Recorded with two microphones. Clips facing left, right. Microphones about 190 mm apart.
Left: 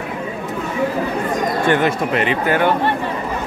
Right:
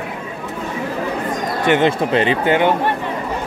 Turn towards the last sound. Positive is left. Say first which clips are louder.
# right 2 dB
turn(degrees=-25)  # may be behind; listen again after turning